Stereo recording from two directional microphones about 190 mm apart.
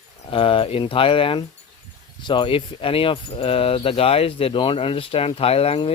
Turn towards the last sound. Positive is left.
turn(degrees=30)  # may be behind; listen again after turning